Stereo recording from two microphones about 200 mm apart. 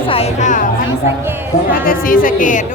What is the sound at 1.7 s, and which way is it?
Speech, 45° left (ahead or behind).